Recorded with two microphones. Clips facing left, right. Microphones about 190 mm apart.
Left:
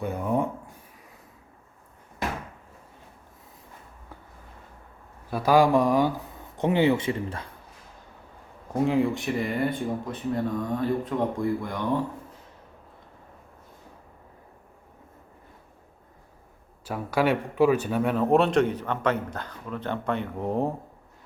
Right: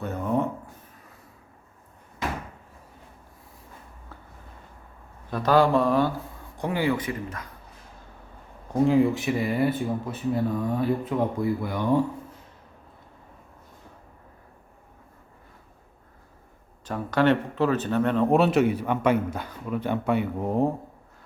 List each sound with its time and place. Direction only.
0.0 s speech: 10° left (ahead or behind)
5.3 s speech: 10° left (ahead or behind); by 7.4 s 30° left (ahead or behind)
8.7 s speech: centre (ahead or behind)
16.8 s speech: 10° left (ahead or behind)